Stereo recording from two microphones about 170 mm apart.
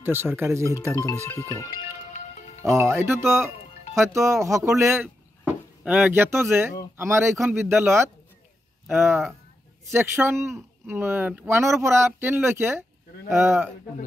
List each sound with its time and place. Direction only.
0.0 s speech: 15° right (ahead or behind)
0.9 s speech: 15° left (ahead or behind)
2.1 s music: 40° left (ahead or behind)
2.6 s speech: 15° right (ahead or behind)